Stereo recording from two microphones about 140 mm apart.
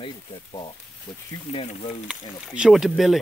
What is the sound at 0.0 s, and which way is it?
Speech, 35° left (ahead or behind).